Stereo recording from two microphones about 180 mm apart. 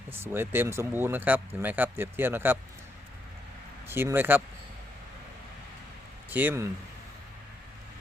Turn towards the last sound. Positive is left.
turn(degrees=-10)  # may be behind; listen again after turning